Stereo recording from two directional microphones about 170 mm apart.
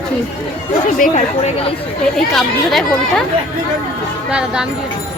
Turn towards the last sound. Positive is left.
turn(degrees=-5)  # may be behind; listen again after turning